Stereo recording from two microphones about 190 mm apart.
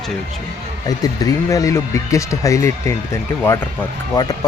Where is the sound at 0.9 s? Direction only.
20° left (ahead or behind).